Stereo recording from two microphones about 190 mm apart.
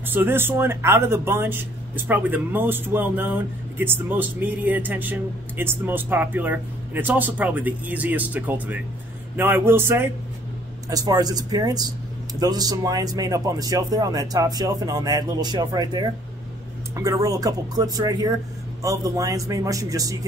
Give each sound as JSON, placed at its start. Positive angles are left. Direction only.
{"t": 0.0, "sound": "speech", "side_deg": -10}